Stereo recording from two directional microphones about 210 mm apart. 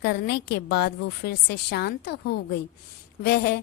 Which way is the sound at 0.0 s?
50° left (ahead or behind).